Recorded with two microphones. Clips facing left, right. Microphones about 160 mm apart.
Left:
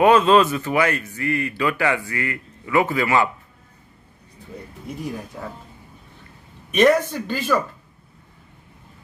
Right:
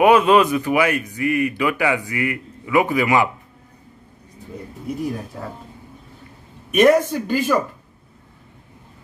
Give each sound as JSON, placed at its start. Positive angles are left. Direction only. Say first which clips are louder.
{"t": 0.0, "sound": "speech", "louder": "right 1 dB", "side_deg": -10}
{"t": 6.7, "sound": "speech", "louder": "right 2 dB", "side_deg": -10}